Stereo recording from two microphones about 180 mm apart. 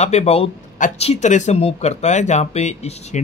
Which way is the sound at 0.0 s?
35° left (ahead or behind).